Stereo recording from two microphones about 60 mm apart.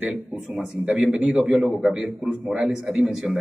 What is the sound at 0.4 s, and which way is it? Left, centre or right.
A man's voice, centre.